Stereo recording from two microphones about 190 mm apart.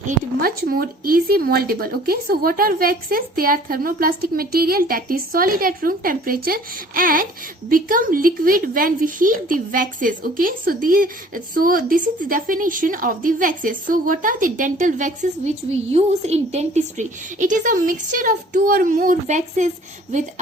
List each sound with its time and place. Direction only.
0.4 s speech: 50° right (ahead or behind)